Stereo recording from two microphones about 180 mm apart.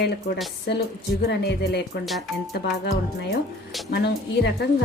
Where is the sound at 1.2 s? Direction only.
65° left (ahead or behind).